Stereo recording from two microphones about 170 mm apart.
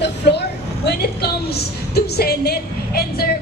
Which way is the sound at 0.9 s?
70° left (ahead or behind).